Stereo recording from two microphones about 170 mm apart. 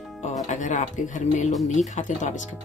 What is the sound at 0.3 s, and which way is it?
Speech, 45° left (ahead or behind).